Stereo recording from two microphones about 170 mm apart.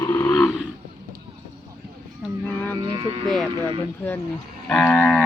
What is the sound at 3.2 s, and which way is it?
Speech, 5° left (ahead or behind).